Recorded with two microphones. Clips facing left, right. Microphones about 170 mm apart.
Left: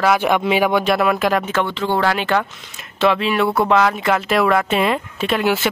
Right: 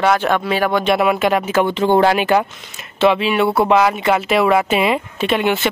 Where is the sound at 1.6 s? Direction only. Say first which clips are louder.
Right 5 dB; 20° right (ahead or behind).